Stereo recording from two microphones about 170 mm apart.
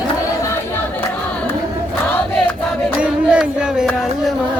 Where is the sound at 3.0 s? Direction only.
5° right (ahead or behind).